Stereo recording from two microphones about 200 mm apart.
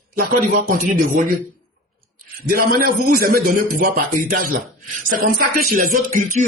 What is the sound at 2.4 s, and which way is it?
Speech, 45° right (ahead or behind).